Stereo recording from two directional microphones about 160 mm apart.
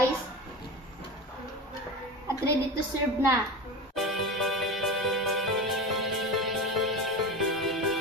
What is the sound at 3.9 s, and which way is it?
Music, centre (ahead or behind).